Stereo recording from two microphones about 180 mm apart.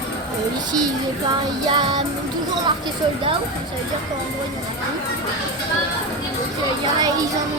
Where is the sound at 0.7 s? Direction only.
25° right (ahead or behind).